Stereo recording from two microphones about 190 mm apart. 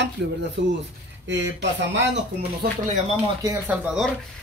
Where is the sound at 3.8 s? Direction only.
Centre (ahead or behind).